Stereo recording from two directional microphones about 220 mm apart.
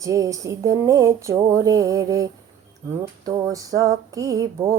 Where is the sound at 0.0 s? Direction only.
15° right (ahead or behind).